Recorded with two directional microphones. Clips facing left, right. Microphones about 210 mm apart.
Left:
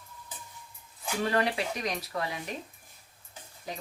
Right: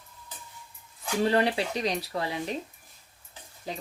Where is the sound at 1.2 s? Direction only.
30° right (ahead or behind).